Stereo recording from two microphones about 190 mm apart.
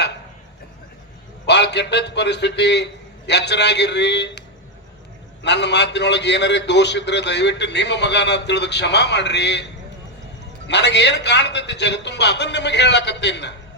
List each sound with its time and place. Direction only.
1.5 s a man's voice: 65° left (ahead or behind)
10.7 s a man's voice: 65° left (ahead or behind)